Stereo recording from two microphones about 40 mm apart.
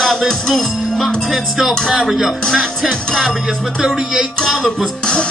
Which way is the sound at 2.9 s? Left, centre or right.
Centre.